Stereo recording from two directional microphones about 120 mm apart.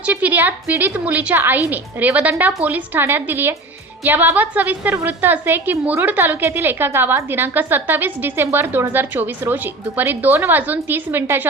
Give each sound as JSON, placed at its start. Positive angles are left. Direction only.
{"t": 0.0, "sound": "a woman's voice", "side_deg": -10}